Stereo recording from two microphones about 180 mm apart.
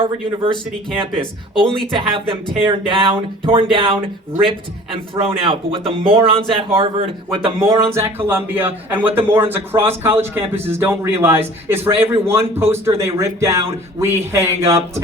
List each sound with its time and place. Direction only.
0.0 s speech: 30° right (ahead or behind)
5.2 s speech: 30° right (ahead or behind)
7.9 s a man's voice: 15° right (ahead or behind)